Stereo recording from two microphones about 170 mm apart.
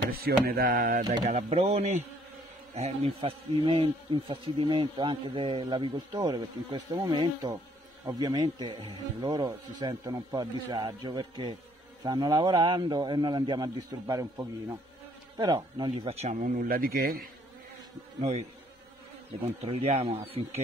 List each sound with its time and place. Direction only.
0.5 s a sound: 65° right (ahead or behind)
1.2 s speech: 40° right (ahead or behind); by 17.1 s 60° right (ahead or behind)
19.6 s speech: 40° right (ahead or behind)